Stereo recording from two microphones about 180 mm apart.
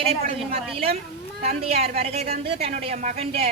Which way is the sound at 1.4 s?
35° right (ahead or behind).